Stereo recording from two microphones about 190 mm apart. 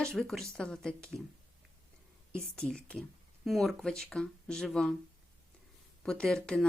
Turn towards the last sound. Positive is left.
turn(degrees=5)  # may be behind; listen again after turning